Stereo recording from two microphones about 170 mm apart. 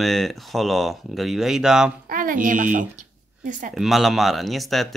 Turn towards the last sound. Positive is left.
turn(degrees=0)  # may be behind; listen again after turning